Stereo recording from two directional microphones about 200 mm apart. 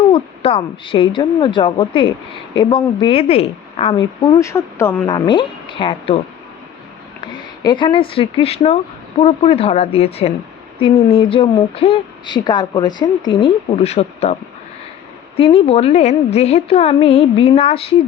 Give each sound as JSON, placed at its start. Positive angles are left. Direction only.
{"t": 0.1, "sound": "a woman's voice", "side_deg": 25}
{"t": 7.2, "sound": "a woman's voice", "side_deg": 20}
{"t": 15.4, "sound": "a woman's voice", "side_deg": 30}